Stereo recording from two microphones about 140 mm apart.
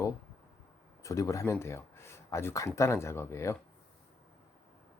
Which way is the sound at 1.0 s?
25° left (ahead or behind).